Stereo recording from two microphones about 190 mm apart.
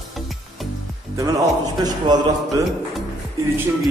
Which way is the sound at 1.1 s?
20° right (ahead or behind).